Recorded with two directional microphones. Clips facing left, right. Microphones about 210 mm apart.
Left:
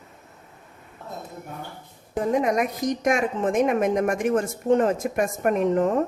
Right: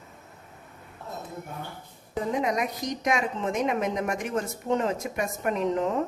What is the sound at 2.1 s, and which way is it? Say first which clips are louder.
A woman's voice: left 5 dB; 50° left (ahead or behind).